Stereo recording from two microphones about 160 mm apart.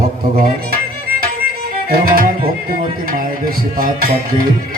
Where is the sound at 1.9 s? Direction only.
65° right (ahead or behind).